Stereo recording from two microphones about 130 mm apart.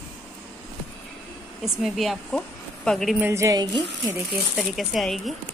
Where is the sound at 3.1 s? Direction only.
20° right (ahead or behind).